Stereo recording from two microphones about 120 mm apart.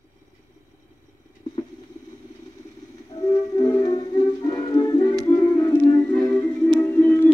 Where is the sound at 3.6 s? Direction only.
35° left (ahead or behind).